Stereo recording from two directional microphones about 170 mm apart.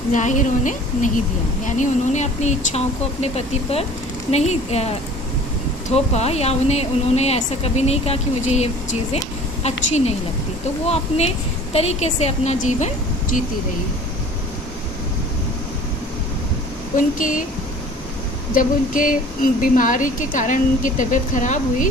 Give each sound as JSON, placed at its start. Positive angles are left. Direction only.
{"t": 0.1, "sound": "a woman's voice", "side_deg": 45}
{"t": 17.0, "sound": "a woman's voice", "side_deg": 50}
{"t": 18.5, "sound": "a woman's voice", "side_deg": 55}